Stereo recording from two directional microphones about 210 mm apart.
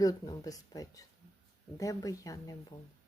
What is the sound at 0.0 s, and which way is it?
Speech, 15° left (ahead or behind).